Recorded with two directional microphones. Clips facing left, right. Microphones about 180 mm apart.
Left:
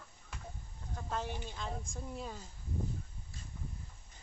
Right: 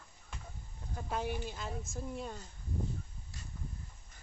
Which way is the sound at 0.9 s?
10° right (ahead or behind).